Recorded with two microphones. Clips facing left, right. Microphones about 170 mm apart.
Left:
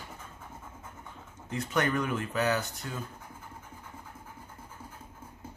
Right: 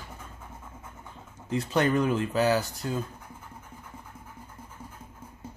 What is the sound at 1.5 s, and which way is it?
Speech, 30° right (ahead or behind).